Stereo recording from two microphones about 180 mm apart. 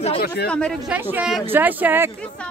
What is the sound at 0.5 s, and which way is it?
Speech, 5° left (ahead or behind).